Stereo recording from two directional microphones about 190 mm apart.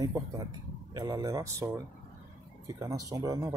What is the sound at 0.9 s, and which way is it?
Speech, 20° right (ahead or behind).